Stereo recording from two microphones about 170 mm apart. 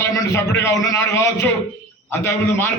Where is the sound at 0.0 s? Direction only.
15° left (ahead or behind).